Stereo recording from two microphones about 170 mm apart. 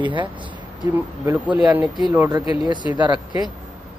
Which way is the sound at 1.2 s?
10° right (ahead or behind).